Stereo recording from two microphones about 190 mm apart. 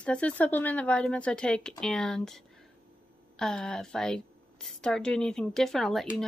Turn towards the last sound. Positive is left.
turn(degrees=0)  # may be behind; listen again after turning